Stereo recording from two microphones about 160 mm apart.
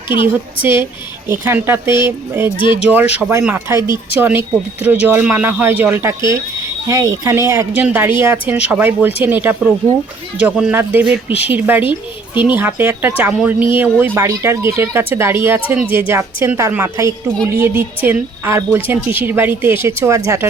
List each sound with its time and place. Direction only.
0.6 s speech: 15° right (ahead or behind)
12.3 s speech: 30° left (ahead or behind)
12.5 s speech: 10° right (ahead or behind)